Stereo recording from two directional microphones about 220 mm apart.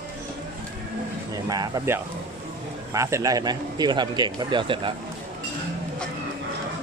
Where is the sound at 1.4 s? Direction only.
15° right (ahead or behind).